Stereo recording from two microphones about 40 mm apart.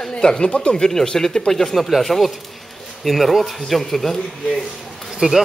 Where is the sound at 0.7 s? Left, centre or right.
Centre.